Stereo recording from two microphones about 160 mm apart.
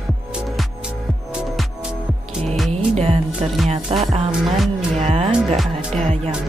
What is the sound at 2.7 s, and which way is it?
Music, 40° right (ahead or behind).